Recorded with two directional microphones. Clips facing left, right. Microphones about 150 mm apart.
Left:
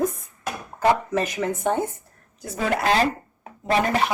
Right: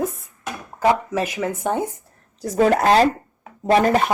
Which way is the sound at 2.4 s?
35° right (ahead or behind).